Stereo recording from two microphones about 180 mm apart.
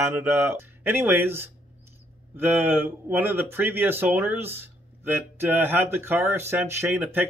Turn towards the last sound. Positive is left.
turn(degrees=-10)  # may be behind; listen again after turning